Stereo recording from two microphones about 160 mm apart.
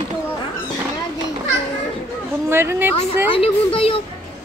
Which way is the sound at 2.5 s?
15° right (ahead or behind).